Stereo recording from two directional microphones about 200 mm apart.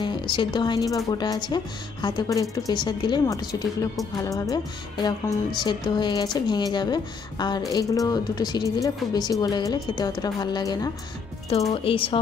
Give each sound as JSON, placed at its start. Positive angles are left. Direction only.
{"t": 0.0, "sound": "speech", "side_deg": 25}
{"t": 5.6, "sound": "speech", "side_deg": 20}